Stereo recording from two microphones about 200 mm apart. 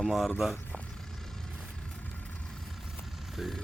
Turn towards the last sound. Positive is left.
turn(degrees=0)  # may be behind; listen again after turning